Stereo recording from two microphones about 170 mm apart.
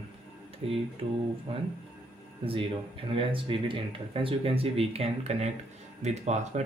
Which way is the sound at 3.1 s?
30° right (ahead or behind).